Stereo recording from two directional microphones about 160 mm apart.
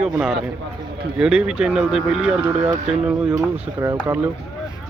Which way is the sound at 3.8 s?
20° right (ahead or behind).